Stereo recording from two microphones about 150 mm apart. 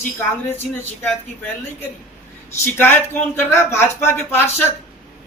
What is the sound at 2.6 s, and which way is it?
A man's voice, 15° left (ahead or behind).